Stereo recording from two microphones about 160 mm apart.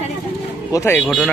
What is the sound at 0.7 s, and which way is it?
Speech, 15° left (ahead or behind).